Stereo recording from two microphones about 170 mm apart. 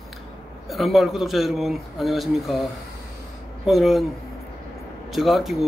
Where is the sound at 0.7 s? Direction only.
Centre (ahead or behind).